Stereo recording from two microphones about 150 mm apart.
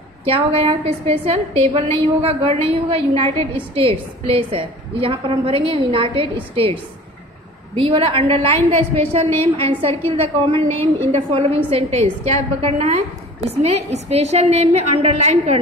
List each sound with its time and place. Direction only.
0.2 s a woman's voice: 35° right (ahead or behind)